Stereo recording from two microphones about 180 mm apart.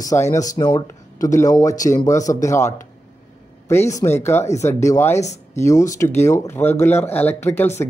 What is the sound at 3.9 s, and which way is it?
Speech, 15° left (ahead or behind).